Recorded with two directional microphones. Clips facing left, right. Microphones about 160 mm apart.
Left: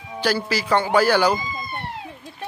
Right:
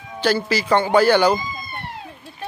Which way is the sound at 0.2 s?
10° left (ahead or behind).